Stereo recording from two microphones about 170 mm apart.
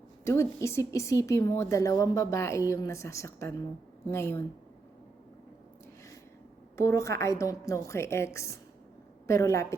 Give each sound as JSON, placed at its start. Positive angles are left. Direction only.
{"t": 0.3, "sound": "a woman's voice", "side_deg": 15}
{"t": 6.7, "sound": "a woman's voice", "side_deg": 15}